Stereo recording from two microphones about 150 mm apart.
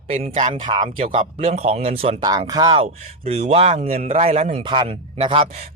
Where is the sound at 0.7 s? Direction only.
30° right (ahead or behind).